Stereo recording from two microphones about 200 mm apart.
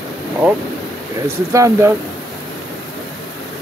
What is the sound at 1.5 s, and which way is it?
Speech, 15° right (ahead or behind).